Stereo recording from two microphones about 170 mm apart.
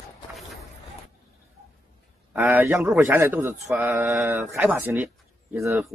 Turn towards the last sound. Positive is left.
turn(degrees=-15)  # may be behind; listen again after turning